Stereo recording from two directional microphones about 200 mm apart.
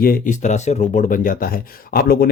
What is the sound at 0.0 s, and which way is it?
Speech, 45° left (ahead or behind).